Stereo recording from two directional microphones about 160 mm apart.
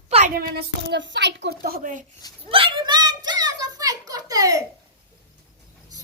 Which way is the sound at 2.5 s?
30° right (ahead or behind).